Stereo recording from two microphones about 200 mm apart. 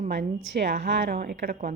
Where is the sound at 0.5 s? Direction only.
60° right (ahead or behind).